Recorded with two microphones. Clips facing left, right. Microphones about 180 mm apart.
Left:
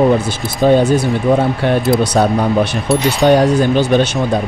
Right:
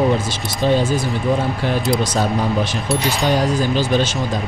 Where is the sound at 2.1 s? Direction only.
65° left (ahead or behind).